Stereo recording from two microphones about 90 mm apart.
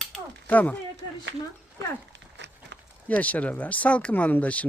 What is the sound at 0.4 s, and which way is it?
Speech, 20° left (ahead or behind).